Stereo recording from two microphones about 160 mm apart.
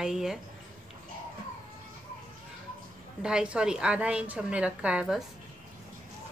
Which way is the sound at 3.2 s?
5° right (ahead or behind).